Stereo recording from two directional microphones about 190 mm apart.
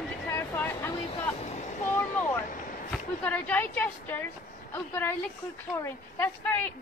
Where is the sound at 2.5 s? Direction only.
45° left (ahead or behind).